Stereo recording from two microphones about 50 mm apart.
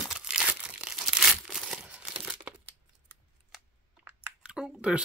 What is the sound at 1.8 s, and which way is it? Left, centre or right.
Crumpling, right.